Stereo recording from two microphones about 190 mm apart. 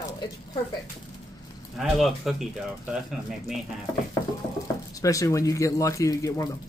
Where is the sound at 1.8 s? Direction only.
Centre (ahead or behind).